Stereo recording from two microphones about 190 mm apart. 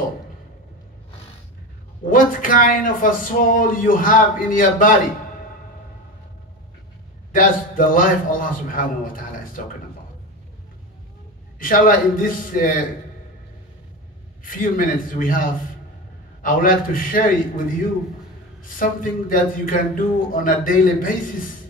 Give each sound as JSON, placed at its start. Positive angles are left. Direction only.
{"t": 2.0, "sound": "speech", "side_deg": 45}
{"t": 7.3, "sound": "speech", "side_deg": 45}
{"t": 11.6, "sound": "speech", "side_deg": 45}
{"t": 14.4, "sound": "speech", "side_deg": 45}
{"t": 16.4, "sound": "speech", "side_deg": 45}